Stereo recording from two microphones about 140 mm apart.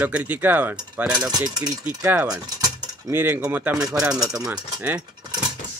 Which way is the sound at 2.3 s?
25° right (ahead or behind).